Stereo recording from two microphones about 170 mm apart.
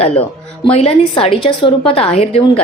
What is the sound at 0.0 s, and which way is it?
A woman's voice, 35° left (ahead or behind).